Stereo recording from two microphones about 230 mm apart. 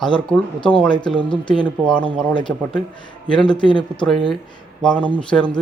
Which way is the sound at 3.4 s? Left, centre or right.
Centre.